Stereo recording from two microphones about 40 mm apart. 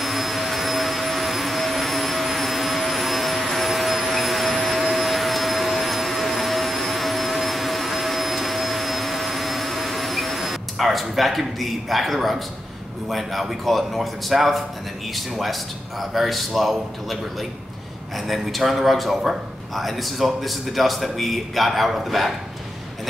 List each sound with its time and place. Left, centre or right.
0.0 s vacuum cleaner: centre
13.1 s a man's voice: centre